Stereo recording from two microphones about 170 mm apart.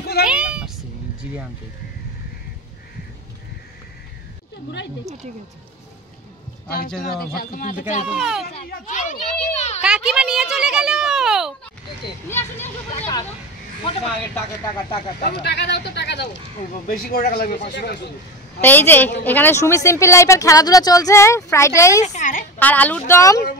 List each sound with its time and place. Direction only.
0.3 s meow: 5° right (ahead or behind)
7.3 s speech: 55° left (ahead or behind)
8.1 s speech: 5° right (ahead or behind)
8.6 s a child's voice: 50° left (ahead or behind)
9.8 s speech: 5° right (ahead or behind)
12.3 s speech: 15° left (ahead or behind)
15.2 s speech: 70° left (ahead or behind)
16.8 s speech: 55° left (ahead or behind); by 17.9 s 70° left (ahead or behind)
18.6 s speech: 10° left (ahead or behind)
22.0 s a child's voice: 45° left (ahead or behind)
22.6 s speech: 10° left (ahead or behind)